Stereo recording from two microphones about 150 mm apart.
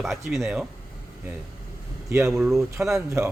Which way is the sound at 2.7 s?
20° right (ahead or behind).